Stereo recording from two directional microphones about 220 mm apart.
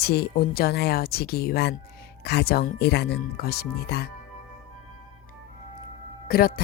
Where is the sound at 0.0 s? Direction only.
45° left (ahead or behind).